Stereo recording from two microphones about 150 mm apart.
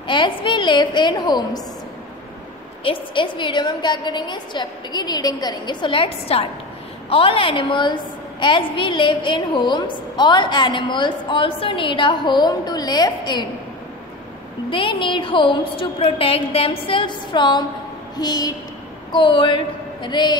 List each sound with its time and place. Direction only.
0.0 s a woman's voice: 30° left (ahead or behind)
2.8 s a woman's voice: 35° left (ahead or behind)
14.7 s a woman's voice: 35° left (ahead or behind)